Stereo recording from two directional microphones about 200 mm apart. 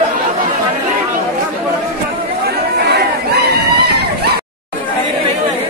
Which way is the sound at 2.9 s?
55° right (ahead or behind).